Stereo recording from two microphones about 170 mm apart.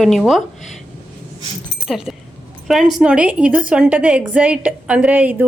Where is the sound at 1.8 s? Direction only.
Centre (ahead or behind).